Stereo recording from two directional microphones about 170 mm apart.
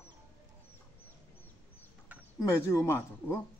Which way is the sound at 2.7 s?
15° left (ahead or behind).